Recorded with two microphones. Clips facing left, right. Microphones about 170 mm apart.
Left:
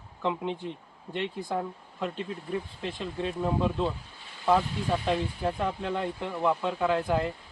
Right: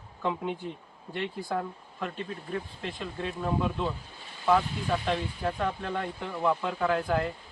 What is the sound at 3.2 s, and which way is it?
Speech, 25° left (ahead or behind).